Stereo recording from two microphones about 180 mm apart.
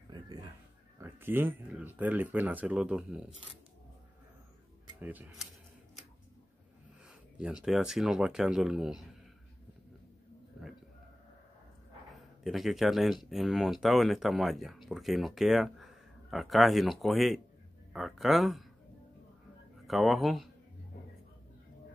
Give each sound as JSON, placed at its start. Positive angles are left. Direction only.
{"t": 0.1, "sound": "a sound", "side_deg": -20}
{"t": 1.7, "sound": "speech", "side_deg": -10}
{"t": 5.0, "sound": "speech", "side_deg": -10}
{"t": 7.6, "sound": "speech", "side_deg": -5}
{"t": 12.4, "sound": "speech", "side_deg": 0}
{"t": 19.9, "sound": "speech", "side_deg": 0}